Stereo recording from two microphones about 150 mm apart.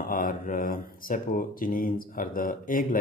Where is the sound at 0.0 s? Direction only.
70° left (ahead or behind).